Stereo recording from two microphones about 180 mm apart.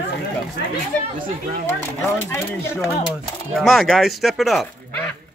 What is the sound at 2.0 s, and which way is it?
Speech, 15° left (ahead or behind).